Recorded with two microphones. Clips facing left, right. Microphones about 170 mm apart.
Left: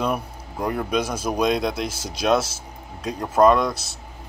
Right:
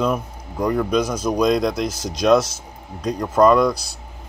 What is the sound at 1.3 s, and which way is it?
Speech, 5° left (ahead or behind).